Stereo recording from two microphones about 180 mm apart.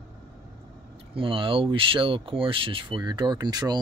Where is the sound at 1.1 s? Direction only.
30° right (ahead or behind).